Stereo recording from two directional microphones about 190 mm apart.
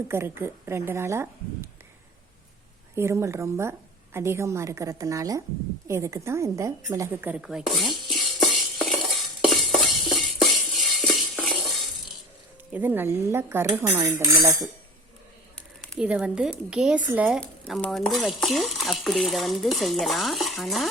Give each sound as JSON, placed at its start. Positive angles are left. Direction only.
{"t": 0.1, "sound": "a woman's voice", "side_deg": -10}
{"t": 2.9, "sound": "a woman's voice", "side_deg": -15}
{"t": 5.9, "sound": "a sound", "side_deg": -15}
{"t": 12.7, "sound": "a woman's voice", "side_deg": -10}
{"t": 15.9, "sound": "stir", "side_deg": -5}
{"t": 17.1, "sound": "a woman's voice", "side_deg": -5}
{"t": 17.4, "sound": "stir", "side_deg": 5}